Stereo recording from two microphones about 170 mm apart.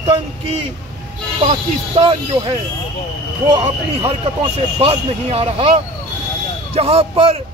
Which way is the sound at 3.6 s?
35° right (ahead or behind).